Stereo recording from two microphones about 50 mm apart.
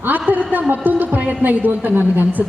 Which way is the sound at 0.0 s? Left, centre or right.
Right.